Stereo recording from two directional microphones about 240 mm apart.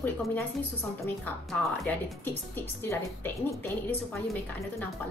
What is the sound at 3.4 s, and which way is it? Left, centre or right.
A woman's voice, centre.